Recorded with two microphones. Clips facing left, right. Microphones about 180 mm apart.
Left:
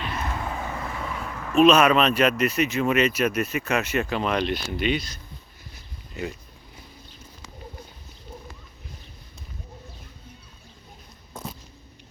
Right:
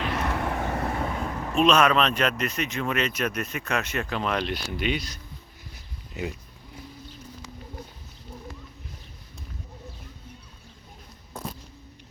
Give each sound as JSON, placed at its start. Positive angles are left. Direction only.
{"t": 0.0, "sound": "vehicle", "side_deg": -75}
{"t": 1.0, "sound": "a sound", "side_deg": -35}
{"t": 1.5, "sound": "speech", "side_deg": 5}